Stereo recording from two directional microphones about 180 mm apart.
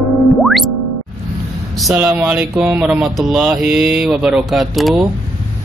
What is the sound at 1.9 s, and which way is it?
Mantra, 10° right (ahead or behind).